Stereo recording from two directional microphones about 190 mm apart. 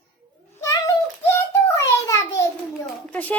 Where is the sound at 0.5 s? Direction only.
15° left (ahead or behind).